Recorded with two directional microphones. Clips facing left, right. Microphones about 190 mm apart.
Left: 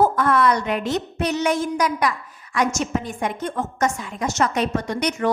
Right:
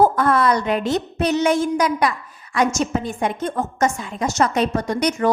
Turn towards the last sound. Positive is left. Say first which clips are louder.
# right 3 dB
turn(degrees=-35)  # may be behind; listen again after turning